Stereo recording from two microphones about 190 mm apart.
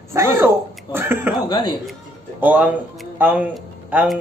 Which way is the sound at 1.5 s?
20° left (ahead or behind).